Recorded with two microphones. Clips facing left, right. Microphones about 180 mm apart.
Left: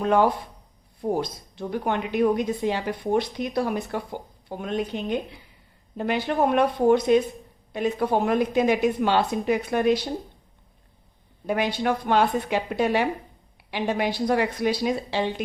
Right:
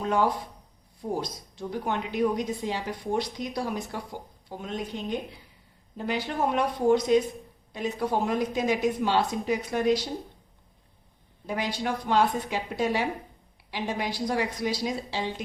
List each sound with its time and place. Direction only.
0.0 s a woman's voice: 60° left (ahead or behind)
11.4 s a woman's voice: 60° left (ahead or behind)